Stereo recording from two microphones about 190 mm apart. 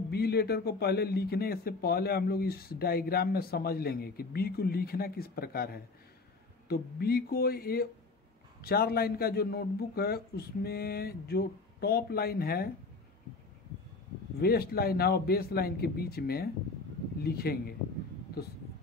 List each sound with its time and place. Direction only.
0.1 s a man's voice: 55° left (ahead or behind)
14.4 s a man's voice: 55° left (ahead or behind)